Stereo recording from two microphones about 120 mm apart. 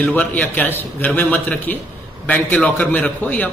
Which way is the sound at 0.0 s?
15° left (ahead or behind).